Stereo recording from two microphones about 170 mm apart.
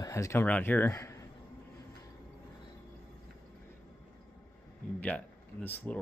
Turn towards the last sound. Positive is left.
turn(degrees=10)  # may be behind; listen again after turning